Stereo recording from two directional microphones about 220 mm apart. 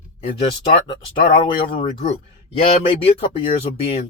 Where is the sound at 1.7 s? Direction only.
25° left (ahead or behind).